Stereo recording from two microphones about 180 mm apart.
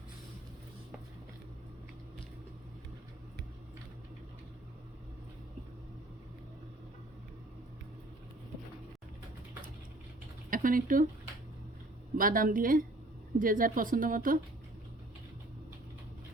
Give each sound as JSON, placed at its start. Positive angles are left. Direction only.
{"t": 10.5, "sound": "speech", "side_deg": -50}
{"t": 12.1, "sound": "a woman's voice", "side_deg": -50}